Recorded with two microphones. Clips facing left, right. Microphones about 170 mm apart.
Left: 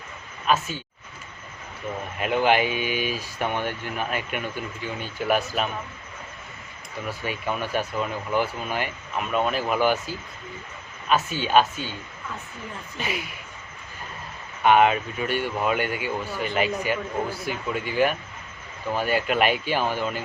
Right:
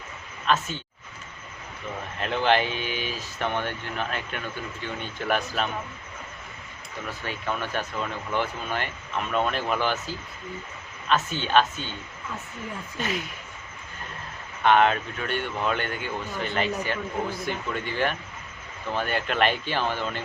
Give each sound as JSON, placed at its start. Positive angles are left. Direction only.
{"t": 0.4, "sound": "speech", "side_deg": 10}
{"t": 2.1, "sound": "speech", "side_deg": 10}
{"t": 7.1, "sound": "speech", "side_deg": 10}
{"t": 13.0, "sound": "speech", "side_deg": 10}
{"t": 14.6, "sound": "speech", "side_deg": 10}